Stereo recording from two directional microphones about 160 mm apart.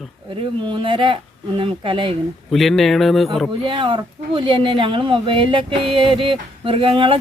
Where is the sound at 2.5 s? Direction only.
Centre (ahead or behind).